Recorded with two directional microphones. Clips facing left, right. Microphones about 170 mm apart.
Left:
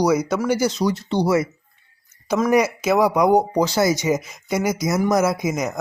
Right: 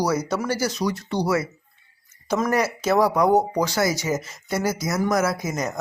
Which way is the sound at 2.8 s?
10° left (ahead or behind).